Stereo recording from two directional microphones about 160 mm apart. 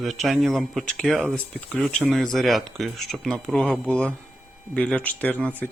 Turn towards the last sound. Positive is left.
turn(degrees=10)  # may be behind; listen again after turning